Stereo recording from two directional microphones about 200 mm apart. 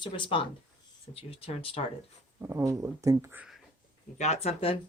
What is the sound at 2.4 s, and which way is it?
Speech, 15° right (ahead or behind).